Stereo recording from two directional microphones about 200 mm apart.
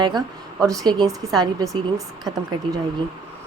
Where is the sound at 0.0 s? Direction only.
20° right (ahead or behind).